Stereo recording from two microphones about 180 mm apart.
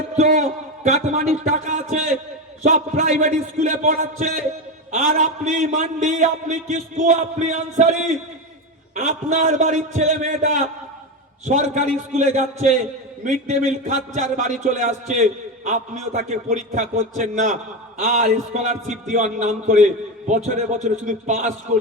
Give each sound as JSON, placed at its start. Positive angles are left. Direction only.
{"t": 0.2, "sound": "a sound", "side_deg": -40}
{"t": 0.9, "sound": "a man's voice", "side_deg": -40}
{"t": 11.4, "sound": "a man's voice", "side_deg": -40}